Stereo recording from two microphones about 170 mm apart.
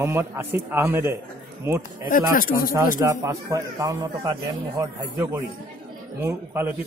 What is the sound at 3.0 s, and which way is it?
A man's voice, 20° right (ahead or behind).